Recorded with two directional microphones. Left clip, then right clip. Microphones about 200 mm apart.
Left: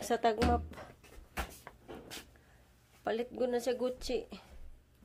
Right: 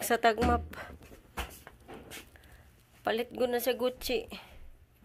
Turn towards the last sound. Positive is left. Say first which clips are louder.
# right 4 dB
turn(degrees=-10)  # may be behind; listen again after turning